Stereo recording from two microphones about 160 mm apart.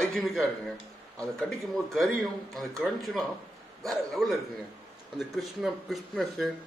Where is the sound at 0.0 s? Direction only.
Centre (ahead or behind).